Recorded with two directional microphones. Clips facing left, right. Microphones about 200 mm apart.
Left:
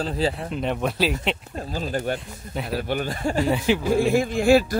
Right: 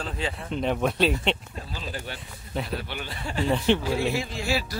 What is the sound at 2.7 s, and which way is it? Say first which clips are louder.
Speech: left 8 dB; 45° left (ahead or behind).